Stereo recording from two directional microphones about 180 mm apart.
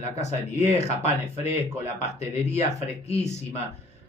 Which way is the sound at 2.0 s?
35° left (ahead or behind).